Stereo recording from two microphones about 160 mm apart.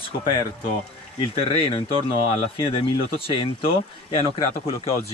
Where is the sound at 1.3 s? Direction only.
35° left (ahead or behind).